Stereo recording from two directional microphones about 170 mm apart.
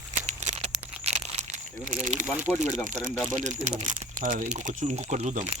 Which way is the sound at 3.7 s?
50° right (ahead or behind).